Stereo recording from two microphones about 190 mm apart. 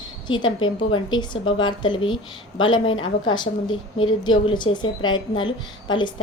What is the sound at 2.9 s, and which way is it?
Speech, 90° left.